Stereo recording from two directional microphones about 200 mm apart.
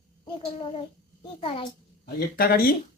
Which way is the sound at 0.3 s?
25° left (ahead or behind).